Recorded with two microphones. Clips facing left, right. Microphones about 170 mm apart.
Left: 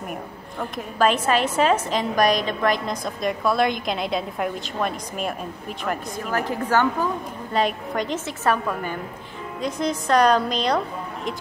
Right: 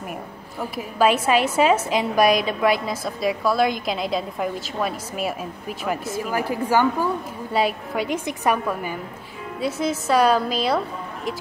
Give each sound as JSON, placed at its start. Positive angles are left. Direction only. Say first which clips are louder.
{"t": 0.6, "sound": "a woman's voice", "louder": "right 1 dB", "side_deg": -10}